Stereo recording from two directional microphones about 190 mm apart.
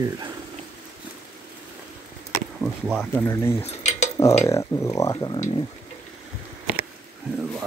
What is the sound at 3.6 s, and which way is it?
Cutlery, 35° left (ahead or behind).